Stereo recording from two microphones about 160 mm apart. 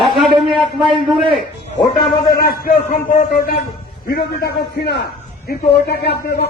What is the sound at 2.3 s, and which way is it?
Speech, 65° left (ahead or behind).